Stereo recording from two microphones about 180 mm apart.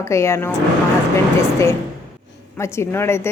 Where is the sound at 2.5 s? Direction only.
15° left (ahead or behind).